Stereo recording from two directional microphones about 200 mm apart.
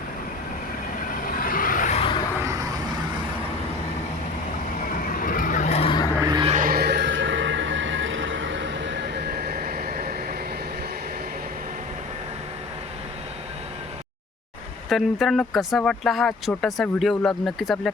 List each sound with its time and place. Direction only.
1.3 s vehicle: 45° left (ahead or behind)
2.4 s vehicle: 15° right (ahead or behind)
5.0 s vehicle: 45° left (ahead or behind); by 6.1 s 25° left (ahead or behind)
6.2 s music: 20° right (ahead or behind)
6.5 s a sound: 45° right (ahead or behind)
14.8 s speech: centre (ahead or behind)